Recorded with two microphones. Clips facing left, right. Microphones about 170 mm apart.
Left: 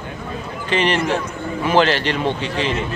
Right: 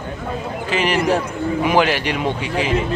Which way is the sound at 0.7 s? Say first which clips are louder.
Right 1 dB; 5° right (ahead or behind).